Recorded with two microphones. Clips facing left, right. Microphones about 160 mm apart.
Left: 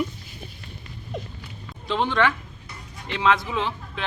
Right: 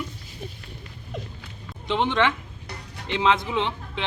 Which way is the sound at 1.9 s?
20° right (ahead or behind).